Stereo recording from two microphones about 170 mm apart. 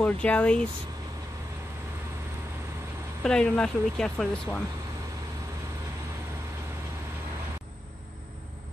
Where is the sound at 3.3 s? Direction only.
5° left (ahead or behind).